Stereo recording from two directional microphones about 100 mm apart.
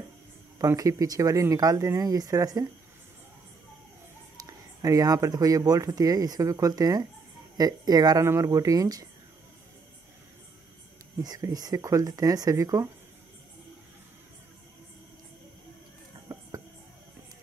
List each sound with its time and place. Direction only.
0.6 s speech: 35° right (ahead or behind)
4.4 s speech: 35° right (ahead or behind)
11.2 s speech: 40° right (ahead or behind)
16.3 s a sound: 35° right (ahead or behind)